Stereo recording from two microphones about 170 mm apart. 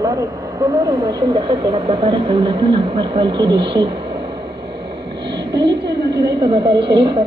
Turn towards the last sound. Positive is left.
turn(degrees=-30)  # may be behind; listen again after turning